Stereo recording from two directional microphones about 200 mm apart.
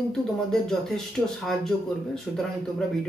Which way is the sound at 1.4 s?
Centre (ahead or behind).